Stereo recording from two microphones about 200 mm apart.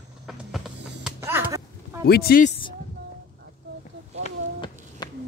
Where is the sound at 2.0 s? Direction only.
50° left (ahead or behind).